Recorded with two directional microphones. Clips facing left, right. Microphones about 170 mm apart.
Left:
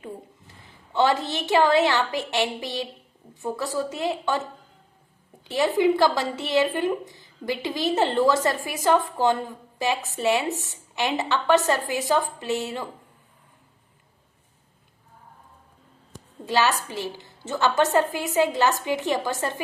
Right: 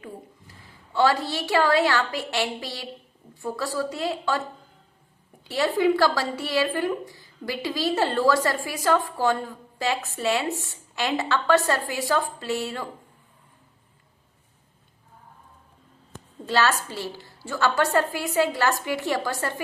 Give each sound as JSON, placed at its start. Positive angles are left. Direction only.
{"t": 0.9, "sound": "a woman's voice", "side_deg": 20}
{"t": 16.5, "sound": "a woman's voice", "side_deg": 15}